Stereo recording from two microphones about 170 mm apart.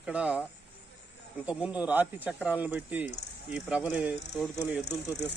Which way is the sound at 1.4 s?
5° right (ahead or behind).